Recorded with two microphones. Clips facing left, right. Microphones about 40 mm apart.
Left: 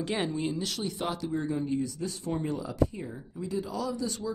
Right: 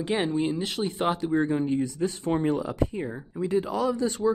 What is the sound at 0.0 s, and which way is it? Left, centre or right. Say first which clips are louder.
Speech: right 5 dB; right.